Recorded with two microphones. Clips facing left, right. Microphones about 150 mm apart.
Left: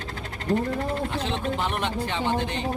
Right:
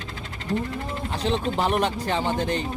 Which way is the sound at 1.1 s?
35° right (ahead or behind).